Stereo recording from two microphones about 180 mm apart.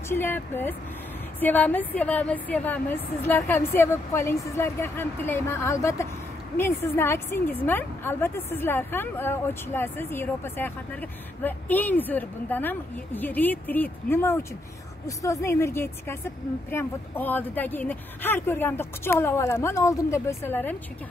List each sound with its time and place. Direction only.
0.1 s a woman's voice: 10° left (ahead or behind)